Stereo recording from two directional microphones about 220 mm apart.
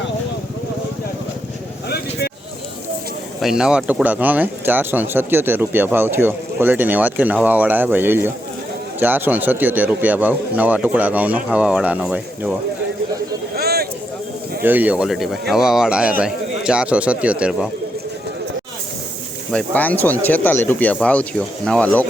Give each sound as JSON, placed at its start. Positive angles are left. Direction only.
{"t": 3.4, "sound": "speech", "side_deg": -5}
{"t": 13.6, "sound": "a sound", "side_deg": -45}
{"t": 14.6, "sound": "a man's voice", "side_deg": -10}
{"t": 19.5, "sound": "speech", "side_deg": 5}